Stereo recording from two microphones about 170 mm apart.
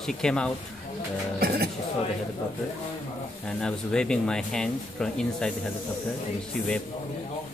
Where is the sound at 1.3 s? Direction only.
65° right (ahead or behind).